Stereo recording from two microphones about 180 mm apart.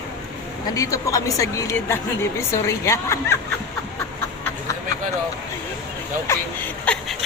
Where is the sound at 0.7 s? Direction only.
20° left (ahead or behind).